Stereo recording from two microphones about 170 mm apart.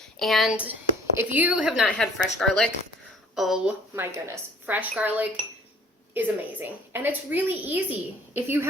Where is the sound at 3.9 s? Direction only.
15° right (ahead or behind).